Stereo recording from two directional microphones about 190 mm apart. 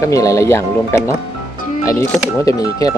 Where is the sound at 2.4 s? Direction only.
20° left (ahead or behind).